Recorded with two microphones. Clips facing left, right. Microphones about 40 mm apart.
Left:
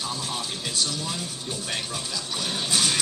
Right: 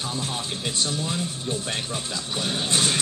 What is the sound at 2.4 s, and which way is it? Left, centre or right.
Speech, right.